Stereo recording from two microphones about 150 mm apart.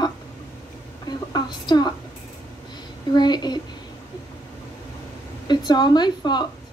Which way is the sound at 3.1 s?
30° left (ahead or behind).